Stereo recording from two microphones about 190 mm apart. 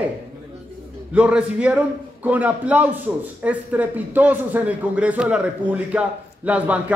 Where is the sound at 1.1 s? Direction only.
5° right (ahead or behind).